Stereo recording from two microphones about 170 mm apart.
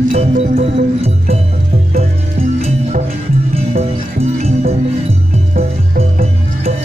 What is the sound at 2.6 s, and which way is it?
Music, 40° right (ahead or behind).